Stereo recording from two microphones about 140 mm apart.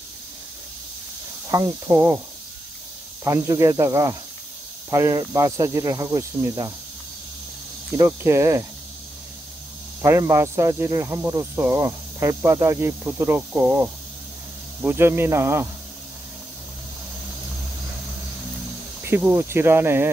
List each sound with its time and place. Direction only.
1.5 s speech: 25° right (ahead or behind)
3.3 s speech: 20° right (ahead or behind)
8.0 s speech: 20° right (ahead or behind)
10.0 s speech: 20° right (ahead or behind)
19.0 s speech: 15° right (ahead or behind)